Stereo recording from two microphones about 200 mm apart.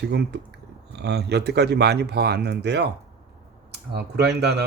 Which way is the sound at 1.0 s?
55° right (ahead or behind).